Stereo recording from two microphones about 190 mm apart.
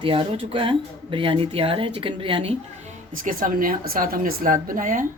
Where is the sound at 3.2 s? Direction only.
45° right (ahead or behind).